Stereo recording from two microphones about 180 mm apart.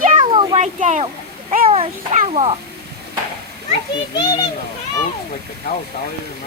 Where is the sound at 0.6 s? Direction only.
40° right (ahead or behind).